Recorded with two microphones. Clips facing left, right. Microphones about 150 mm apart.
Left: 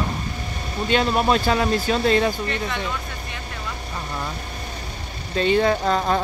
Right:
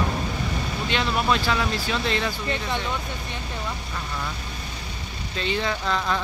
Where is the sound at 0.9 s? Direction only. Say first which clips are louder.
Left 5 dB; 40° left (ahead or behind).